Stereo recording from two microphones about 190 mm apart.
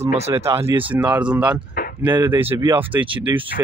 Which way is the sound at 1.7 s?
50° left (ahead or behind).